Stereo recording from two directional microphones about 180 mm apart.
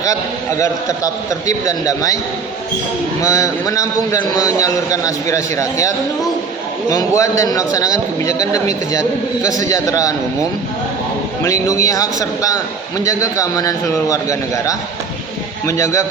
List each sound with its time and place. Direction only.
0.0 s a man's voice: 20° left (ahead or behind)
3.2 s a man's voice: 15° left (ahead or behind)
6.9 s a man's voice: 15° left (ahead or behind)
11.4 s a man's voice: 20° left (ahead or behind)